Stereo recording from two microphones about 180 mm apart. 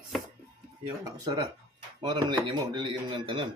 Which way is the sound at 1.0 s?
20° right (ahead or behind).